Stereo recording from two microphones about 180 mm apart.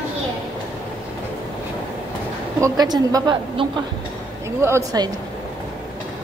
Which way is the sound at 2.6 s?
20° right (ahead or behind).